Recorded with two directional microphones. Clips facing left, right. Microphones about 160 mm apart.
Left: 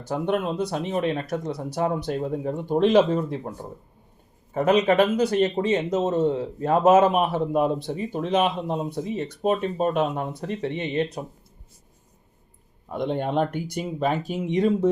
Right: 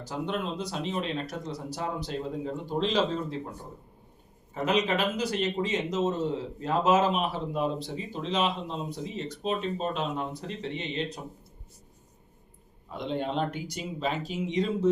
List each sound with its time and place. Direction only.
0.0 s speech: 55° left (ahead or behind)
4.5 s speech: 55° left (ahead or behind)
12.9 s speech: 55° left (ahead or behind)